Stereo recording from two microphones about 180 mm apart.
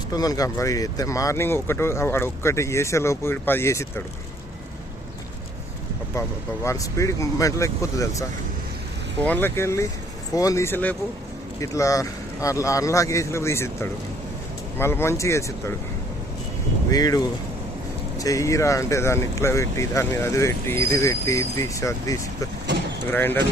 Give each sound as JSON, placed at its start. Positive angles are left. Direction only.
{"t": 0.1, "sound": "speech", "side_deg": 20}
{"t": 6.1, "sound": "speech", "side_deg": 15}
{"t": 9.2, "sound": "speech", "side_deg": 10}
{"t": 16.9, "sound": "speech", "side_deg": 20}